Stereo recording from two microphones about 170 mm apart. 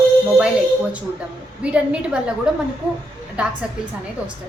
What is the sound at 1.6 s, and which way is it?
Speech, 5° right (ahead or behind).